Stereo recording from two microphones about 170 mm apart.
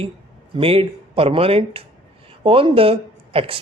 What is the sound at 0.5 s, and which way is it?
Speech, 35° right (ahead or behind).